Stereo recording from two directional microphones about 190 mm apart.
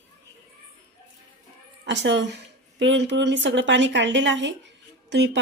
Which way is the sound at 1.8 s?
70° right (ahead or behind).